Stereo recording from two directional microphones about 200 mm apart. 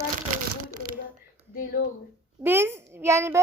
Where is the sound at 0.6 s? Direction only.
45° right (ahead or behind).